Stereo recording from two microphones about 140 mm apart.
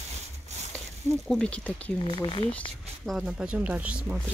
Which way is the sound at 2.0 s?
40° left (ahead or behind).